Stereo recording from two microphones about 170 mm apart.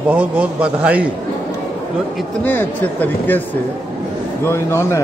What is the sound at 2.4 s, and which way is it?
Speech, 10° left (ahead or behind).